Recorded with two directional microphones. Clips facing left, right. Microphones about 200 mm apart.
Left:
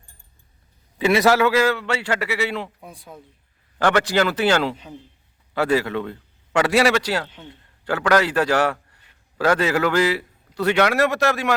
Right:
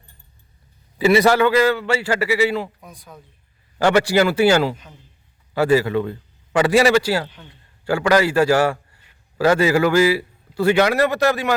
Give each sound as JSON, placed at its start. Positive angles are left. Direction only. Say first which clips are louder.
{"t": 0.9, "sound": "a man's voice", "louder": "right 2 dB", "side_deg": 0}
{"t": 2.8, "sound": "speech", "louder": "left 2 dB", "side_deg": 30}
{"t": 3.8, "sound": "a man's voice", "louder": "right 3 dB", "side_deg": -10}